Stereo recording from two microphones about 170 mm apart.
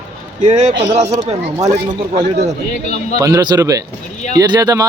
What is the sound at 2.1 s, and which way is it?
Speech, 40° right (ahead or behind).